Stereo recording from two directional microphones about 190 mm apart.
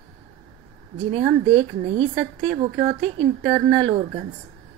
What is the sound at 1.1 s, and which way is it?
A woman's voice, 30° right (ahead or behind).